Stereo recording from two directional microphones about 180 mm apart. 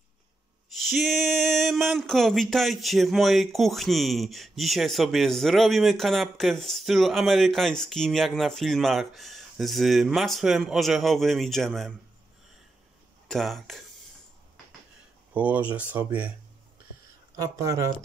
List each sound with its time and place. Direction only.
0.7 s speech: centre (ahead or behind)
13.3 s speech: centre (ahead or behind)
15.3 s speech: 10° right (ahead or behind)
17.4 s speech: 15° right (ahead or behind)